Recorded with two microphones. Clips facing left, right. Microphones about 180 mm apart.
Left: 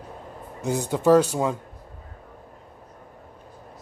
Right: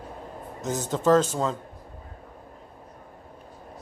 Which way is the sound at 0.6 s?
10° left (ahead or behind).